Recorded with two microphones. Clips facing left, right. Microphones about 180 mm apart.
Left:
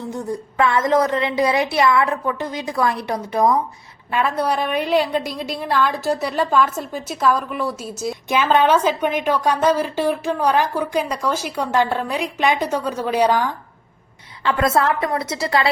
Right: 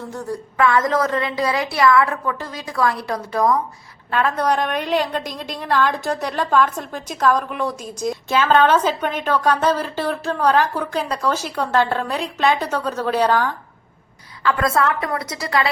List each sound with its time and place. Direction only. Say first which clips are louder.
0.0 s a woman's voice: left 2 dB; 20° left (ahead or behind)
14.4 s a woman's voice: left 1 dB; 25° left (ahead or behind)